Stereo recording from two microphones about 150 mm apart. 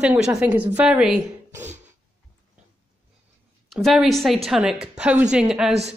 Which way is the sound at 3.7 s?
Centre (ahead or behind).